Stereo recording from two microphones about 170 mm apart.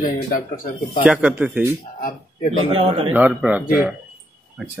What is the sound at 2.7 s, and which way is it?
Speech, 35° right (ahead or behind).